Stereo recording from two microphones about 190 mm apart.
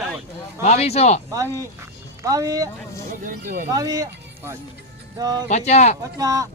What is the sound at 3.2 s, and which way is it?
Speech, 45° right (ahead or behind).